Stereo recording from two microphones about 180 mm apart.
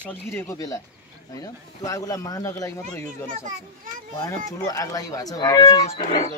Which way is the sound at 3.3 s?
45° right (ahead or behind).